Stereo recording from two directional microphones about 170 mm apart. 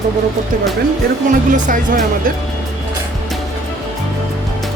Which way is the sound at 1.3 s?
50° right (ahead or behind).